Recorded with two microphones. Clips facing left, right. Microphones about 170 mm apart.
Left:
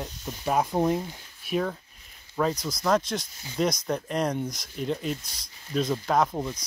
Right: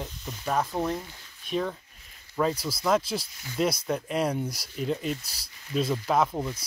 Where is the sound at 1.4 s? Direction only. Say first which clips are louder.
Left 2 dB; 5° left (ahead or behind).